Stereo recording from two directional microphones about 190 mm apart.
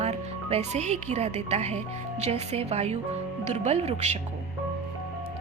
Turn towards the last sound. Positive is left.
turn(degrees=-35)  # may be behind; listen again after turning